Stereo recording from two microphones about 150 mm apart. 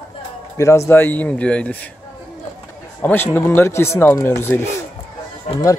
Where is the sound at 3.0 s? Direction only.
15° left (ahead or behind).